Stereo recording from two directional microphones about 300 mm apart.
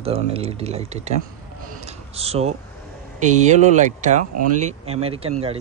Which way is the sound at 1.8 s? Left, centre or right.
Right.